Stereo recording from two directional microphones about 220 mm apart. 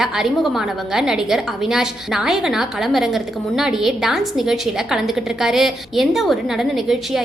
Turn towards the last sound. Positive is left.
turn(degrees=0)  # may be behind; listen again after turning